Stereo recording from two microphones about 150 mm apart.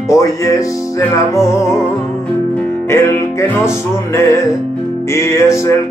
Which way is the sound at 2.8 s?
15° left (ahead or behind).